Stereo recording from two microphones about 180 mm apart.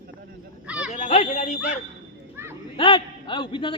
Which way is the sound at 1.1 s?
40° left (ahead or behind).